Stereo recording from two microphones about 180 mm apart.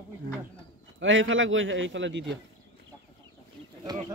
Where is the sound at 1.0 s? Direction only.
90° right.